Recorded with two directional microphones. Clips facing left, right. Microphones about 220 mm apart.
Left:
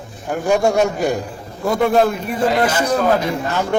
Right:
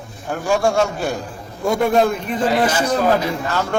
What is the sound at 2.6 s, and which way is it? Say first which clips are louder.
Speech: left 1 dB; 5° right (ahead or behind).